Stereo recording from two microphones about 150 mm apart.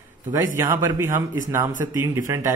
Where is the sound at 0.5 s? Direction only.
20° right (ahead or behind).